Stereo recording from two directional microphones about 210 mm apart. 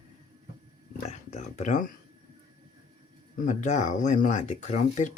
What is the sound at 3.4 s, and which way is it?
Speech, 35° left (ahead or behind).